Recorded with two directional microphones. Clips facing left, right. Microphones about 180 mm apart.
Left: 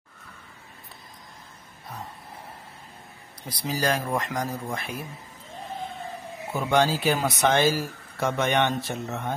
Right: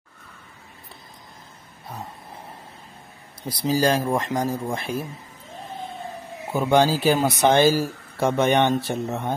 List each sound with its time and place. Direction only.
3.4 s speech: 30° right (ahead or behind)
6.7 s speech: 30° right (ahead or behind)